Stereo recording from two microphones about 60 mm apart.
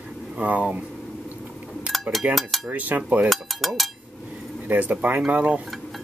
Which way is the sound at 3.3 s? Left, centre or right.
Centre.